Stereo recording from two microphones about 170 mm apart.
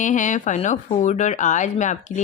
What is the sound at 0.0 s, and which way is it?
Speech, 45° left (ahead or behind).